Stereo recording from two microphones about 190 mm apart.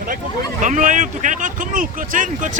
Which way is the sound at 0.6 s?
40° right (ahead or behind).